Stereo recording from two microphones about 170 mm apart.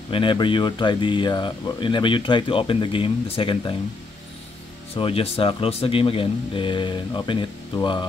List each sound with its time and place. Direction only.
0.1 s speech: 30° left (ahead or behind)
4.9 s speech: 35° left (ahead or behind)